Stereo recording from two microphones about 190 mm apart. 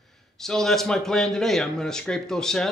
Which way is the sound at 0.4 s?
Centre (ahead or behind).